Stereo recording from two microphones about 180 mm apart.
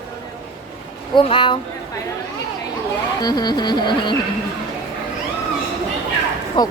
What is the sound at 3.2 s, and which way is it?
Music, 20° left (ahead or behind).